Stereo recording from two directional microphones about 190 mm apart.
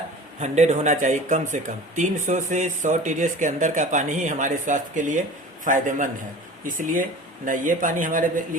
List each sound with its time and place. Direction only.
0.3 s speech: 40° right (ahead or behind)